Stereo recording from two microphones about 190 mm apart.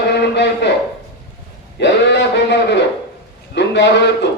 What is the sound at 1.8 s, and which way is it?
A man's voice, 70° left (ahead or behind).